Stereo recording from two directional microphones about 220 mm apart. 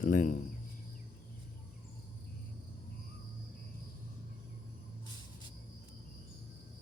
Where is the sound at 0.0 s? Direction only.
35° left (ahead or behind).